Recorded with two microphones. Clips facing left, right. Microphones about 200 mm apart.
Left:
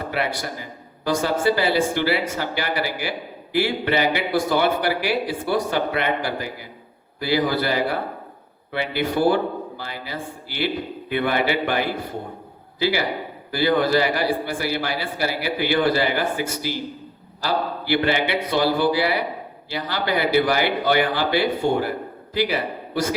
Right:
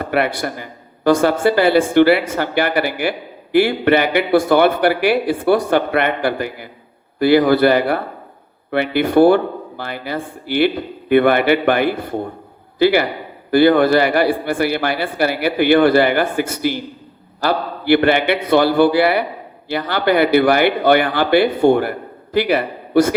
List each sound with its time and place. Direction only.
0.0 s speech: 60° right (ahead or behind)